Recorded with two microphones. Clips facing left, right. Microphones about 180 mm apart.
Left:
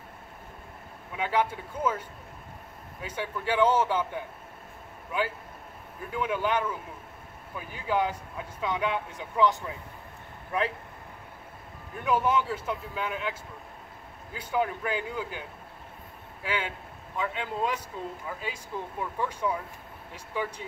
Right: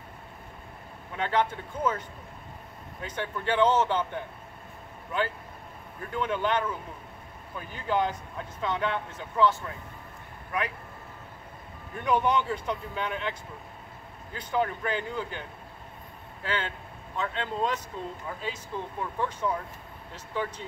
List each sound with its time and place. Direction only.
1.1 s speech: 10° left (ahead or behind)
11.9 s speech: 5° left (ahead or behind)
16.4 s speech: 10° left (ahead or behind)